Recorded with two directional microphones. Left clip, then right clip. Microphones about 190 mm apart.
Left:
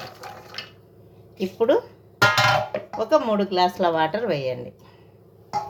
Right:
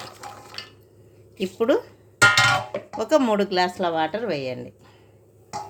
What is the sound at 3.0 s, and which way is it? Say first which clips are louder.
Speech: even; 25° right (ahead or behind).